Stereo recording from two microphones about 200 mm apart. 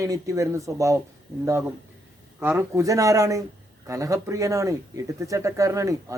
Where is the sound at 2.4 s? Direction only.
10° right (ahead or behind).